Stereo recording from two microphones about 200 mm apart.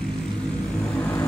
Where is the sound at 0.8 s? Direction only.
5° left (ahead or behind).